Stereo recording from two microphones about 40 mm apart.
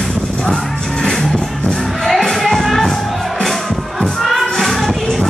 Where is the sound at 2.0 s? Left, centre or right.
Centre.